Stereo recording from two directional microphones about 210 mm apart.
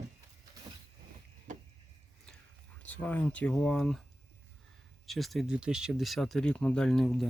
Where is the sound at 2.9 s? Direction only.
5° left (ahead or behind).